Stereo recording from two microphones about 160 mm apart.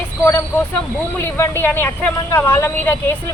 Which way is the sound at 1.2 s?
15° left (ahead or behind).